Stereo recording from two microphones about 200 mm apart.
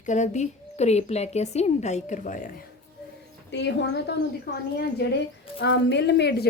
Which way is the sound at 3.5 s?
60° left (ahead or behind).